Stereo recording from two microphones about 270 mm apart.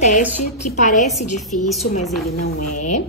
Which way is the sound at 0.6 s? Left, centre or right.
Left.